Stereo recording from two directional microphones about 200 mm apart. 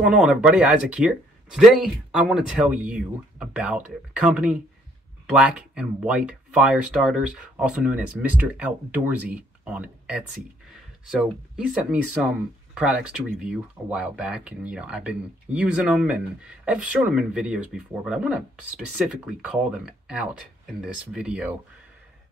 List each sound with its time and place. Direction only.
0.0 s speech: 5° right (ahead or behind)